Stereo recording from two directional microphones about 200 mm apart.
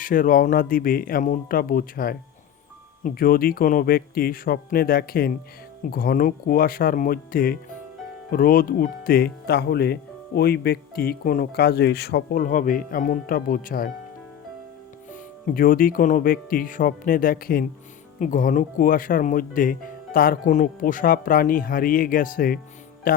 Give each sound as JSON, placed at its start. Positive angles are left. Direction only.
{"t": 0.0, "sound": "speech", "side_deg": 45}
{"t": 15.1, "sound": "speech", "side_deg": 45}